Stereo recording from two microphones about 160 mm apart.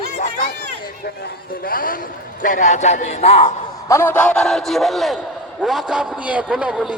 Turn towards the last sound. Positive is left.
turn(degrees=-5)  # may be behind; listen again after turning